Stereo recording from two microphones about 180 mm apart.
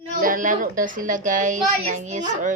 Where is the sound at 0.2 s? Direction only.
50° right (ahead or behind).